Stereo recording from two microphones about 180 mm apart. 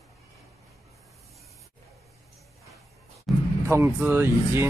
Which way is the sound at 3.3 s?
Centre (ahead or behind).